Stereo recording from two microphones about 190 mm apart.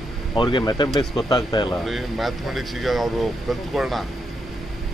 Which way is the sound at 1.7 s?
Centre (ahead or behind).